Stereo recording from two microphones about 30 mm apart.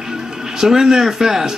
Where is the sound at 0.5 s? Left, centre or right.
Centre.